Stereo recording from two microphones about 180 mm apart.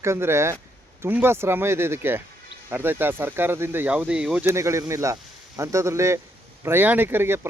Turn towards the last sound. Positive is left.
turn(degrees=-10)  # may be behind; listen again after turning